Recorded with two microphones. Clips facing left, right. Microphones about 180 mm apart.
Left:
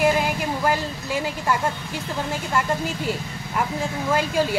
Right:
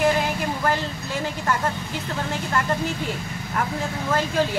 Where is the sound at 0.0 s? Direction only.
10° left (ahead or behind).